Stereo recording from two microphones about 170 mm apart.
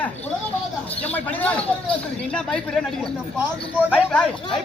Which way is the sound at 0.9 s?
10° left (ahead or behind).